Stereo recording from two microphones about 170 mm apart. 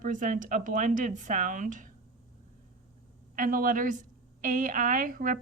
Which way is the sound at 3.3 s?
55° right (ahead or behind).